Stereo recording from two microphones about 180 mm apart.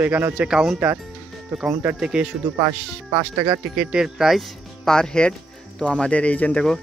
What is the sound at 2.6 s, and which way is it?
Speech, 25° right (ahead or behind).